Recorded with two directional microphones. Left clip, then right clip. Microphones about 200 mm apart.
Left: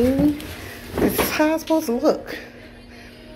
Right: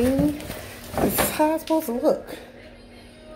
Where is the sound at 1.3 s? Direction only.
5° left (ahead or behind).